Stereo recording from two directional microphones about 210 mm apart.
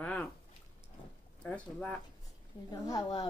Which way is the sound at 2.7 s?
15° left (ahead or behind).